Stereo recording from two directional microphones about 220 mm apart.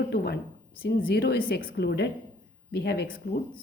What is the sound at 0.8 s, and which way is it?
Speech, 40° left (ahead or behind).